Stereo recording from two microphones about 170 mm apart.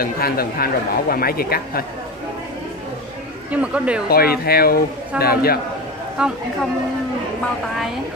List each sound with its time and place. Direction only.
0.0 s speech: 60° left (ahead or behind)
3.5 s speech: 5° right (ahead or behind)
4.1 s speech: 65° left (ahead or behind)
6.1 s a woman's voice: 5° right (ahead or behind)